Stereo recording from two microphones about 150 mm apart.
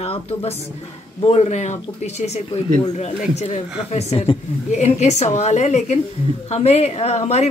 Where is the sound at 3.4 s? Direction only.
45° left (ahead or behind).